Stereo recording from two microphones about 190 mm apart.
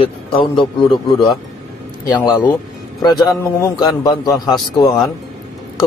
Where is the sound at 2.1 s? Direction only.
15° left (ahead or behind).